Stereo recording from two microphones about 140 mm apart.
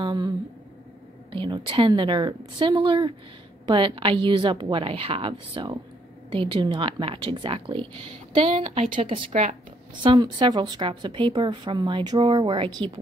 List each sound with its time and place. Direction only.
0.0 s a woman's voice: 30° right (ahead or behind)
1.3 s a woman's voice: 35° right (ahead or behind)
9.3 s speech: 55° right (ahead or behind)
10.0 s a woman's voice: 35° right (ahead or behind)